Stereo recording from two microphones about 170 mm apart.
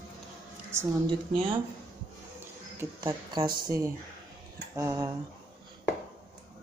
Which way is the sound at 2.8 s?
25° right (ahead or behind).